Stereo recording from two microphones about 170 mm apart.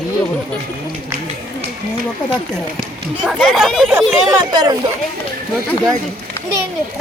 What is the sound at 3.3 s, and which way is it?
Speech, centre (ahead or behind).